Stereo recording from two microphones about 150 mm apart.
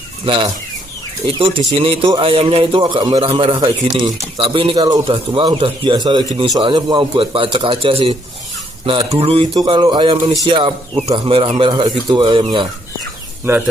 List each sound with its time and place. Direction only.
0.2 s speech: 35° right (ahead or behind)
1.7 s speech: 35° right (ahead or behind)